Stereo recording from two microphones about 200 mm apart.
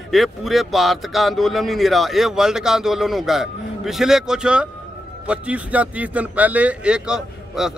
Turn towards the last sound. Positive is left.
turn(degrees=-5)  # may be behind; listen again after turning